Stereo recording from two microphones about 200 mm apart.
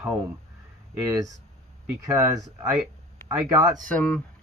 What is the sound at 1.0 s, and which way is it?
Speech, 15° right (ahead or behind).